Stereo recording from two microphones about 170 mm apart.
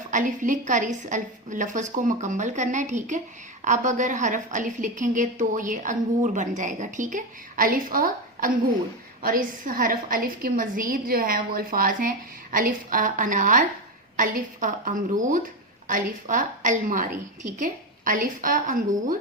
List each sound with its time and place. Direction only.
0.1 s a woman's voice: 50° right (ahead or behind)